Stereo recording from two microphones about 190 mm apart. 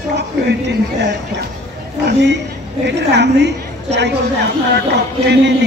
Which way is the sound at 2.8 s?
65° right (ahead or behind).